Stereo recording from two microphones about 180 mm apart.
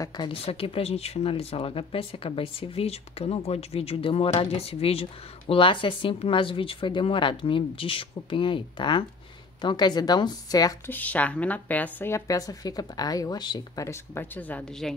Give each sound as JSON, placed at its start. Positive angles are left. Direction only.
{"t": 0.0, "sound": "speech", "side_deg": 25}
{"t": 10.9, "sound": "a woman's voice", "side_deg": 10}